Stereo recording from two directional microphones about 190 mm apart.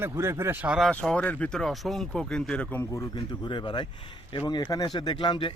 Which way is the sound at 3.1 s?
25° left (ahead or behind).